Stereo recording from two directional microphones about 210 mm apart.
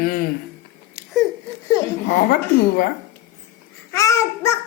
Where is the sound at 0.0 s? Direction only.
45° left (ahead or behind).